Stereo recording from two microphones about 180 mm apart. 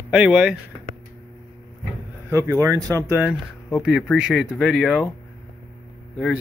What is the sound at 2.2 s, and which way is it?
Speech, 15° right (ahead or behind).